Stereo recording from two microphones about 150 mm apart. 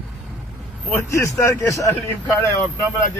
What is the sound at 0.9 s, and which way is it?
Speech, 20° left (ahead or behind).